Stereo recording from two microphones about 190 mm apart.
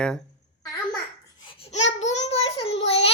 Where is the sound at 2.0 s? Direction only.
35° left (ahead or behind).